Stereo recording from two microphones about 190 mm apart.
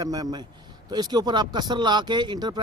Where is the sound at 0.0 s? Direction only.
20° right (ahead or behind).